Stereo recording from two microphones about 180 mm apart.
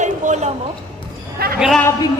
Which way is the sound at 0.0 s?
40° right (ahead or behind).